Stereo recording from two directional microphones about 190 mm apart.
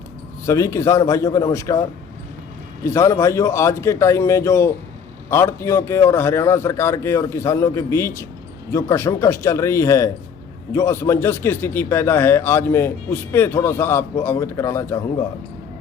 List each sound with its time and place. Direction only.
0.4 s speech: 15° left (ahead or behind)
2.8 s speech: 15° left (ahead or behind)